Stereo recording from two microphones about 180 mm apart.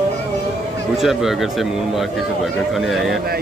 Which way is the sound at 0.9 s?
Centre (ahead or behind).